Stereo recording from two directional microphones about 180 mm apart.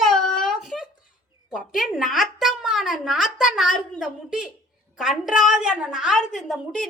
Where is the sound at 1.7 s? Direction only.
Centre (ahead or behind).